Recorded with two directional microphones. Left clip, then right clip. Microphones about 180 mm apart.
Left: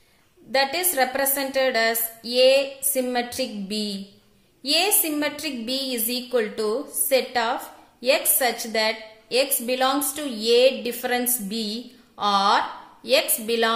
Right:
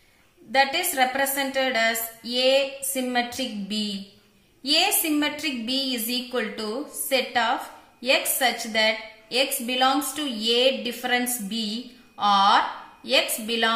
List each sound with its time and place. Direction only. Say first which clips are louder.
0.5 s a woman's voice: right 1 dB; 50° left (ahead or behind)